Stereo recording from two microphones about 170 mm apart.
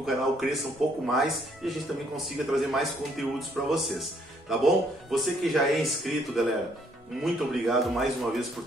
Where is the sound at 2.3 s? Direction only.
Centre (ahead or behind).